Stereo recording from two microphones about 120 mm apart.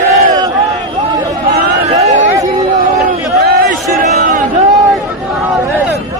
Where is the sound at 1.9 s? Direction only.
75° right (ahead or behind).